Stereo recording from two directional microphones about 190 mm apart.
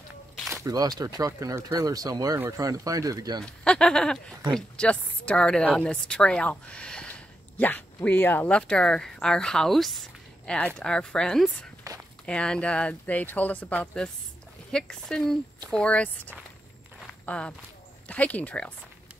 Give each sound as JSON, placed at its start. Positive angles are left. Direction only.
{"t": 0.5, "sound": "speech", "side_deg": -15}
{"t": 3.4, "sound": "speech", "side_deg": 5}
{"t": 11.9, "sound": "walk", "side_deg": -20}
{"t": 12.3, "sound": "speech", "side_deg": 5}